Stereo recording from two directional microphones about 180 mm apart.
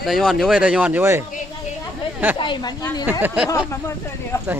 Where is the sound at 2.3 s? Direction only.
25° left (ahead or behind).